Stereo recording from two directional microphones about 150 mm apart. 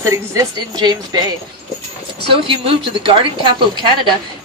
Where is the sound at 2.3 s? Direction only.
35° right (ahead or behind).